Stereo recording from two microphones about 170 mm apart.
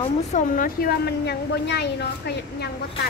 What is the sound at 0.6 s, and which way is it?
A woman's voice, 65° left (ahead or behind).